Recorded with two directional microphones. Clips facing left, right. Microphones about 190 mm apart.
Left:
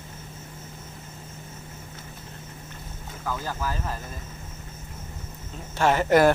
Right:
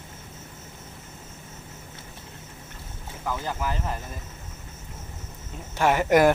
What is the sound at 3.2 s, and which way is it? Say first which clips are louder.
Speech: right 1 dB; 15° right (ahead or behind).